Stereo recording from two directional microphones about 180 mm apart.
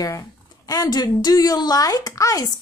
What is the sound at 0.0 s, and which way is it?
Speech, 20° left (ahead or behind).